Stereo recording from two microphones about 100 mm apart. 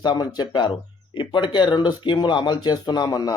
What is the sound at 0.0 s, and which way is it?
A man's voice, 45° left (ahead or behind).